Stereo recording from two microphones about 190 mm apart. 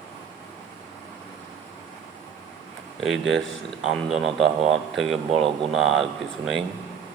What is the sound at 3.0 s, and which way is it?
A man's voice, centre (ahead or behind).